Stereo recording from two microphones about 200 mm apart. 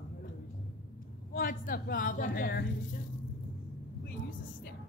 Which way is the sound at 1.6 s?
45° left (ahead or behind).